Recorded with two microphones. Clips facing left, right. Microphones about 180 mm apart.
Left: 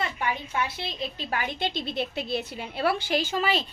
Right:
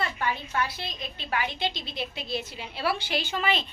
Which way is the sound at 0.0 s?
15° left (ahead or behind).